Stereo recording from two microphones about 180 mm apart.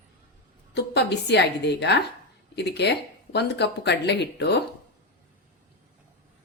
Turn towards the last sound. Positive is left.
turn(degrees=70)  # may be behind; listen again after turning